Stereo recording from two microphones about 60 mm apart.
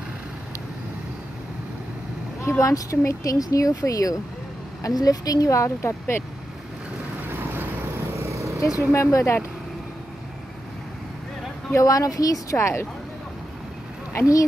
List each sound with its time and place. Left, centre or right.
2.6 s speech: left
4.8 s speech: left
5.8 s speech: left
7.2 s vehicle: right
8.1 s insect: right
8.5 s speech: left
8.9 s speech: left
11.7 s speech: left
12.5 s speech: left
14.1 s speech: left